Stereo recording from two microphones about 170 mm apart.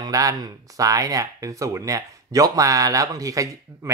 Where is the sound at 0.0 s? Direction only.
20° right (ahead or behind).